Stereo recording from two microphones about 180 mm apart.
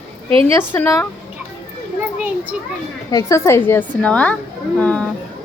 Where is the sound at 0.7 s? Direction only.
15° left (ahead or behind).